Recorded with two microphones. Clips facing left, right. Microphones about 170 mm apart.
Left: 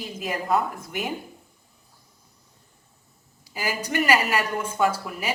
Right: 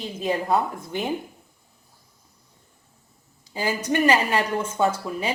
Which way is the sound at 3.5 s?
25° right (ahead or behind).